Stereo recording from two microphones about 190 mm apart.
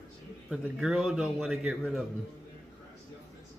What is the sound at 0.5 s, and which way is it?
A man's voice, 5° right (ahead or behind).